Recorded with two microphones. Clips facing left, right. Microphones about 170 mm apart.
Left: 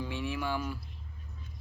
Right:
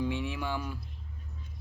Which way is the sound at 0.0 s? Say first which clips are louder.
Right 2 dB; 20° right (ahead or behind).